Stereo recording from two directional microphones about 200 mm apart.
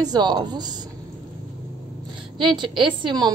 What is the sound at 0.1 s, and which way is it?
Speech, 20° right (ahead or behind).